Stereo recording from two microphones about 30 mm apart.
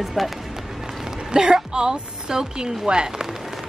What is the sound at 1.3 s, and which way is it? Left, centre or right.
A woman's voice, right.